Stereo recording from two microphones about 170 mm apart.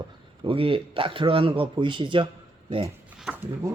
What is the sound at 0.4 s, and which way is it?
Speech, 30° right (ahead or behind).